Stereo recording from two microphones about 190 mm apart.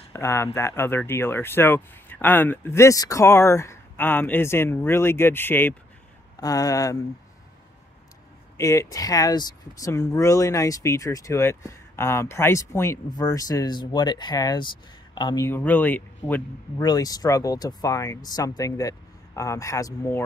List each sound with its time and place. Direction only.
0.1 s speech: 15° left (ahead or behind)
8.5 s speech: 15° left (ahead or behind)
16.7 s speech: 20° left (ahead or behind)